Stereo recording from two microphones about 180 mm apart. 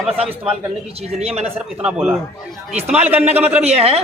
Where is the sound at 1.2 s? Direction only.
35° right (ahead or behind).